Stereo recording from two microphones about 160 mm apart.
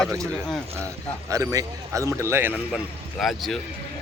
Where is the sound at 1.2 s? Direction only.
20° right (ahead or behind).